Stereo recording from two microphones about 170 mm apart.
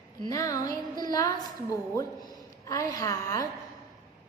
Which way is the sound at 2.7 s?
20° left (ahead or behind).